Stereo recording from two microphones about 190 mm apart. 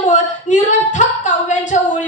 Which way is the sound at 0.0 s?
40° left (ahead or behind).